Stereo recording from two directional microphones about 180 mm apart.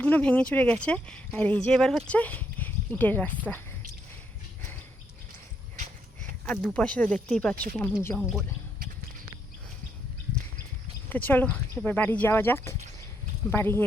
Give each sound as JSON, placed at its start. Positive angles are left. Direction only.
{"t": 0.0, "sound": "speech", "side_deg": 10}
{"t": 6.4, "sound": "speech", "side_deg": 5}
{"t": 7.5, "sound": "speech", "side_deg": -55}
{"t": 8.0, "sound": "speech", "side_deg": 5}
{"t": 11.1, "sound": "speech", "side_deg": 10}